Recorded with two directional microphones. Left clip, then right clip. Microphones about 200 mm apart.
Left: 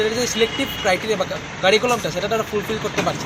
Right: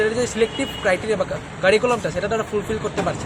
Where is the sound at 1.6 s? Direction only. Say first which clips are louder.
Even; 5° right (ahead or behind).